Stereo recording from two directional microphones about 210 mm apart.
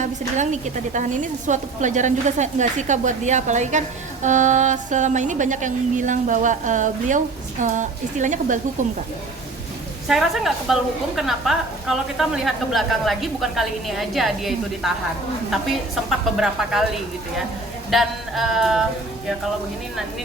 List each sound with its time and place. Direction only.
0.0 s a woman's voice: 35° right (ahead or behind)
10.1 s a woman's voice: centre (ahead or behind)
16.0 s a woman's voice: centre (ahead or behind)
17.9 s a woman's voice: centre (ahead or behind)